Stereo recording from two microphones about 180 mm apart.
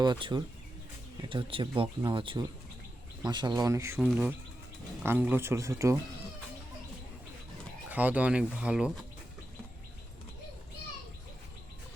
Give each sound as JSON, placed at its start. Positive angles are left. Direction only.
{"t": 0.0, "sound": "speech", "side_deg": -25}
{"t": 4.0, "sound": "speech", "side_deg": -5}
{"t": 7.9, "sound": "speech", "side_deg": -10}